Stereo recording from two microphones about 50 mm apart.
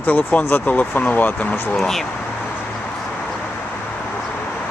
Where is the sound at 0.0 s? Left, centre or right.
Left.